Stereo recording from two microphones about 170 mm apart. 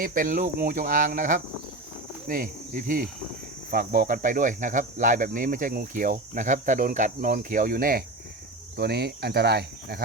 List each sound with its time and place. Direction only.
0.0 s speech: 50° right (ahead or behind)
2.2 s cricket: 55° right (ahead or behind)
3.7 s speech: 60° right (ahead or behind)
8.7 s speech: 75° right (ahead or behind)